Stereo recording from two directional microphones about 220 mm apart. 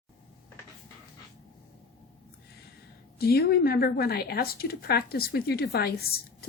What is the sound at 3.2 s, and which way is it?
A woman's voice, 45° left (ahead or behind).